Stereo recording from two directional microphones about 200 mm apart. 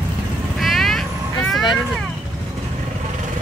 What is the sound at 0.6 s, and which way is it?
Vehicle, centre (ahead or behind).